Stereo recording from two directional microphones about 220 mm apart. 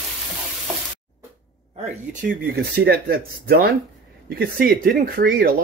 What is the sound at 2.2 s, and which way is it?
Speech, 45° right (ahead or behind).